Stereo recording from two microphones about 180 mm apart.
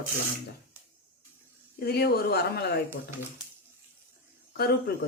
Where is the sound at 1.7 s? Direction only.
60° left (ahead or behind).